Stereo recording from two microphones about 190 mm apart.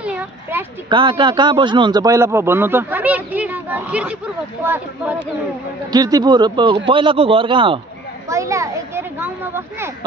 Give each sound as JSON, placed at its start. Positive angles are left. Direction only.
{"t": 0.0, "sound": "a sound", "side_deg": -5}
{"t": 0.8, "sound": "a man's voice", "side_deg": -25}
{"t": 5.9, "sound": "speech", "side_deg": -20}
{"t": 8.3, "sound": "a man's voice", "side_deg": -15}